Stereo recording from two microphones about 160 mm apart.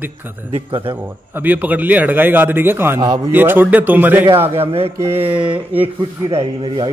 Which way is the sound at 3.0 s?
25° right (ahead or behind).